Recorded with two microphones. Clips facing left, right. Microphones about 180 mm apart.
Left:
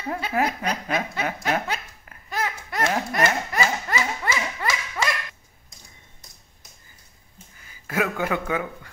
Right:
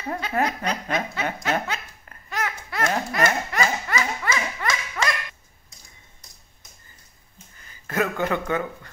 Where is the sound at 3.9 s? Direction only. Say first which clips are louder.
Even; 30° left (ahead or behind).